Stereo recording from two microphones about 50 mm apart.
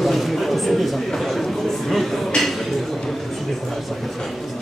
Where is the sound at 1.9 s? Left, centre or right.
Centre.